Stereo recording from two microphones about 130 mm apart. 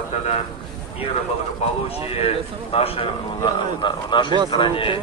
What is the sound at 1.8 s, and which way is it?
A man's voice, 50° left (ahead or behind).